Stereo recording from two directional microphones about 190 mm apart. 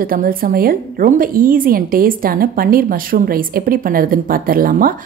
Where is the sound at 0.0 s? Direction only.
50° right (ahead or behind).